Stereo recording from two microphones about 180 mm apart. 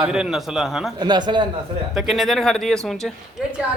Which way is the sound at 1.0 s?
25° right (ahead or behind).